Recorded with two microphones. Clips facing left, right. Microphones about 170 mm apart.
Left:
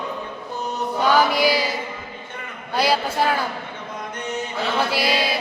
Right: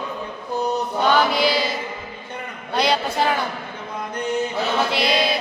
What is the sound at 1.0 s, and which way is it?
Chant, 10° left (ahead or behind).